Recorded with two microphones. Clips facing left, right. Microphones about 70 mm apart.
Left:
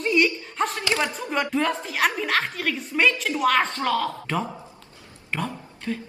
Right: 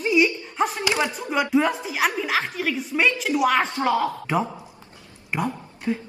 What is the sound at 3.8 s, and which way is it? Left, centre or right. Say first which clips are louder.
Speech: right 2 dB; centre.